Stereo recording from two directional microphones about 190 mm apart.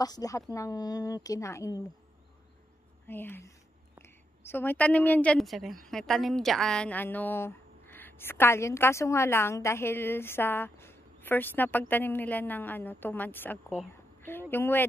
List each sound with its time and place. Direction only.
0.0 s a woman's voice: 20° left (ahead or behind)
3.1 s a woman's voice: 10° left (ahead or behind)